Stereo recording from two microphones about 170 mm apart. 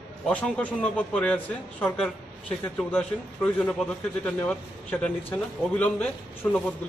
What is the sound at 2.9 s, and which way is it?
A man's voice, 10° left (ahead or behind).